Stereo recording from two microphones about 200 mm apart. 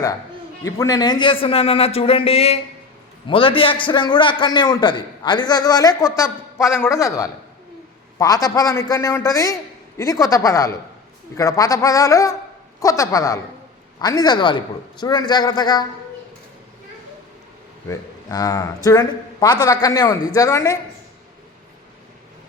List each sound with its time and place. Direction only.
0.6 s a man's voice: 15° left (ahead or behind)
17.8 s a man's voice: 20° left (ahead or behind)